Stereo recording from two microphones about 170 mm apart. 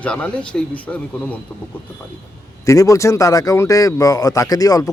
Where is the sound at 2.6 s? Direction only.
20° left (ahead or behind).